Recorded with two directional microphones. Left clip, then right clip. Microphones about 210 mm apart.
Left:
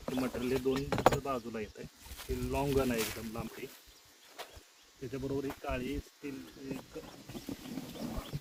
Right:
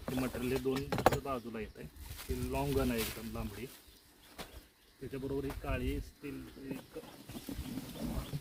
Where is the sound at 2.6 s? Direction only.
20° left (ahead or behind).